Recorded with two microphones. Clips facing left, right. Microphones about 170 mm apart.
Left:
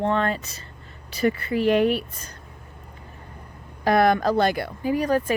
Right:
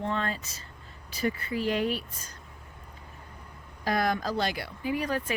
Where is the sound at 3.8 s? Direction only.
65° left (ahead or behind); by 5.3 s 45° left (ahead or behind).